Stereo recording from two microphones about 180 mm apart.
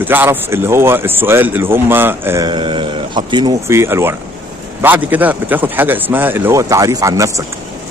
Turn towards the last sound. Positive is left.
turn(degrees=-20)  # may be behind; listen again after turning